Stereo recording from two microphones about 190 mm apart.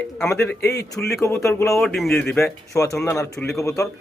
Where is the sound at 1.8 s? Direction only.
Centre (ahead or behind).